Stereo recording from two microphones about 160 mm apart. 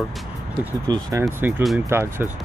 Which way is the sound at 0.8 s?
25° right (ahead or behind).